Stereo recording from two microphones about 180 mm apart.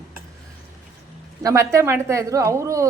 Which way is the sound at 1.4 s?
20° right (ahead or behind).